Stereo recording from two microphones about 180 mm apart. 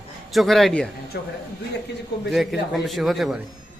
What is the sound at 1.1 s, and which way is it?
Speech, 65° left (ahead or behind).